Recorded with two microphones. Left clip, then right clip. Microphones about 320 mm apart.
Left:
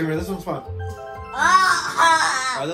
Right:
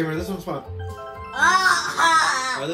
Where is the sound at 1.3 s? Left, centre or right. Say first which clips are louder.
Left 1 dB; left.